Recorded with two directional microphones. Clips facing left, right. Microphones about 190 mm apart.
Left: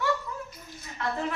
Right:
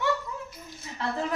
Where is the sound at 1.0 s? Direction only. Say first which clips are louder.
Even; 30° right (ahead or behind).